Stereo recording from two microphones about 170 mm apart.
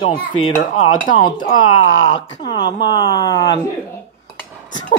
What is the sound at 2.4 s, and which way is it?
Speech, 25° left (ahead or behind).